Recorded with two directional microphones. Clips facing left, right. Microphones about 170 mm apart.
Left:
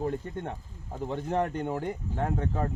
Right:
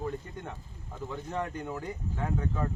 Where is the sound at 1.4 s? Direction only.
65° left (ahead or behind).